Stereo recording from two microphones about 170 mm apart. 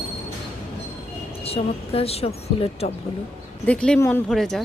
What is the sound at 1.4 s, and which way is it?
Speech, 35° left (ahead or behind).